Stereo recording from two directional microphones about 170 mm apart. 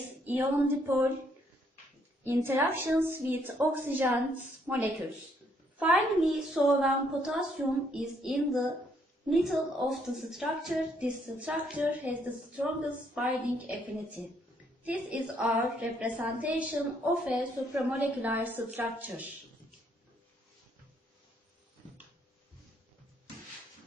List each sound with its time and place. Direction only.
0.2 s a woman's voice: 10° right (ahead or behind)
2.2 s a woman's voice: 10° right (ahead or behind)